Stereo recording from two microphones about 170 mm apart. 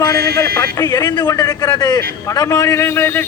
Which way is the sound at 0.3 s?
15° left (ahead or behind).